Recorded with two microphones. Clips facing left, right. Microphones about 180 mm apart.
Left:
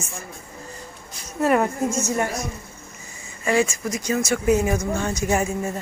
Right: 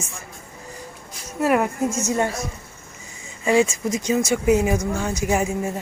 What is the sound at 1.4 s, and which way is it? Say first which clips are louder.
Speech: even; 5° right (ahead or behind).